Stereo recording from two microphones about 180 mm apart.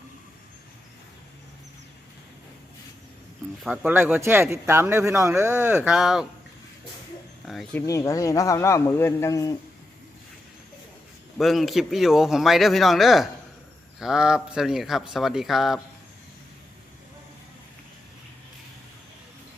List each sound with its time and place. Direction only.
3.6 s speech: 10° right (ahead or behind)
7.4 s speech: centre (ahead or behind)
7.8 s a man's voice: 15° left (ahead or behind)
11.3 s speech: centre (ahead or behind)